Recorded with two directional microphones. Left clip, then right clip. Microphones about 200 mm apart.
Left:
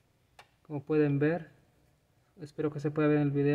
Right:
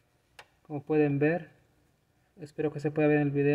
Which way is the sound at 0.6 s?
5° left (ahead or behind).